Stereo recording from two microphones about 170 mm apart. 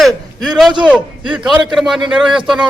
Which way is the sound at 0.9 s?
5° right (ahead or behind).